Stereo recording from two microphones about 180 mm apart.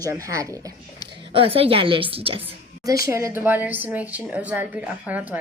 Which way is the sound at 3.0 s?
15° right (ahead or behind).